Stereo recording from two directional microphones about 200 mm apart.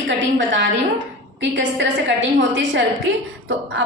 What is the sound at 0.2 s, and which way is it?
A woman's voice, 65° right (ahead or behind).